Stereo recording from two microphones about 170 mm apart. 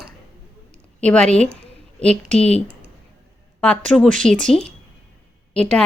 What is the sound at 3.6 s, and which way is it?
A woman's voice, 5° left (ahead or behind).